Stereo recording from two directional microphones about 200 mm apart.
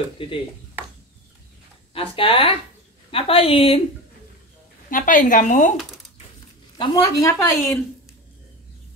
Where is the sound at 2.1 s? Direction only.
30° left (ahead or behind).